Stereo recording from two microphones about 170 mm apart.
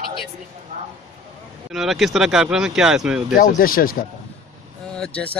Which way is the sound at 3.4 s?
55° left (ahead or behind).